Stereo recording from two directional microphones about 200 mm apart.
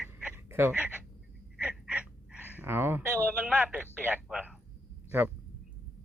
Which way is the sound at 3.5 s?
5° right (ahead or behind).